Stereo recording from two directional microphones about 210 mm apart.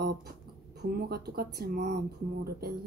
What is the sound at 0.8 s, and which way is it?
Speech, 50° right (ahead or behind).